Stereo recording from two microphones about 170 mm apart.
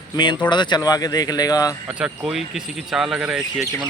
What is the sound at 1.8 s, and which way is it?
Speech, 5° right (ahead or behind).